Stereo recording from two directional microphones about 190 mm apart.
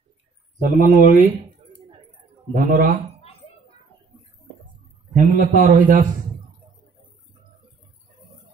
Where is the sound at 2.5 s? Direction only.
45° right (ahead or behind).